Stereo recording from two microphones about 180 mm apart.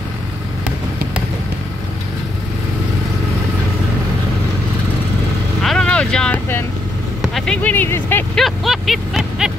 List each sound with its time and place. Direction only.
5.6 s vehicle: centre (ahead or behind)
7.2 s speech: centre (ahead or behind)
8.5 s a sound: centre (ahead or behind)